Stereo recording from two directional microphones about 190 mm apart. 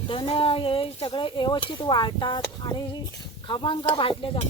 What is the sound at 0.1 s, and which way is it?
Speech, 25° left (ahead or behind).